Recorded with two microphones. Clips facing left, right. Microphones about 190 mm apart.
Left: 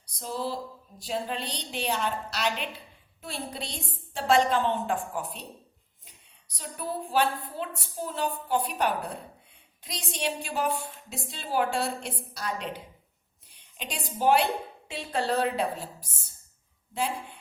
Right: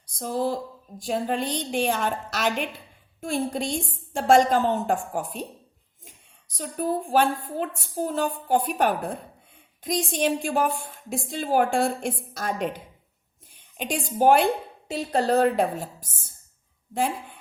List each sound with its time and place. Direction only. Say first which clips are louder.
0.1 s a woman's voice: right 6 dB; 50° right (ahead or behind)